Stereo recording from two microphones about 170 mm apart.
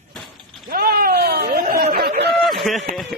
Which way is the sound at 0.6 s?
60° right (ahead or behind).